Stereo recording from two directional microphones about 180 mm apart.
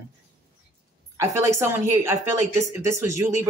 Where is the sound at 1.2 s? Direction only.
15° right (ahead or behind).